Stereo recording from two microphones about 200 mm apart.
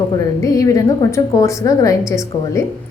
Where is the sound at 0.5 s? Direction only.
15° left (ahead or behind).